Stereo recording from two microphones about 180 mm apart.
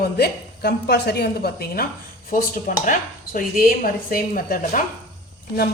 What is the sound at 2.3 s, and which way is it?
A woman's voice, 45° left (ahead or behind).